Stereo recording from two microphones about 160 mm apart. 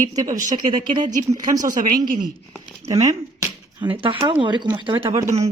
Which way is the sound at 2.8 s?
40° right (ahead or behind).